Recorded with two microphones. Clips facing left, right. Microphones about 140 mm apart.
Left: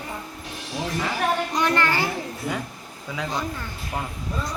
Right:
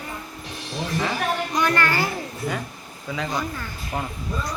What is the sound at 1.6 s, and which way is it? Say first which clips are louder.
Child singing: even; 20° left (ahead or behind).